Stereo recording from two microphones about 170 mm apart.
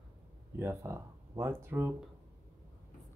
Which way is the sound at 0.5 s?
15° right (ahead or behind).